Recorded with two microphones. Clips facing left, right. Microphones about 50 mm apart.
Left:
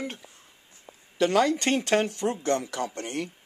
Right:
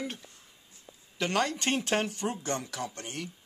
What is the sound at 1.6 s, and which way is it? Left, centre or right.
Speech, left.